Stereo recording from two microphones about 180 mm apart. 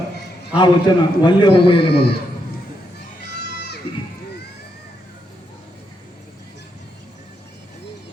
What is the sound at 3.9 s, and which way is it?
Speech, 30° left (ahead or behind).